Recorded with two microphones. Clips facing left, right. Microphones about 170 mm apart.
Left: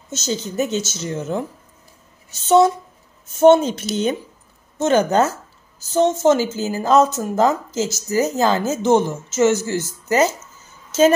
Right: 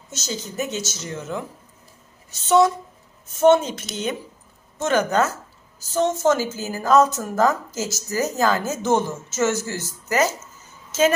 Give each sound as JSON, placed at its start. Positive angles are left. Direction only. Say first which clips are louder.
{"t": 0.1, "sound": "speech", "louder": "left 6 dB", "side_deg": 25}
{"t": 2.4, "sound": "speech", "louder": "left 3 dB", "side_deg": 30}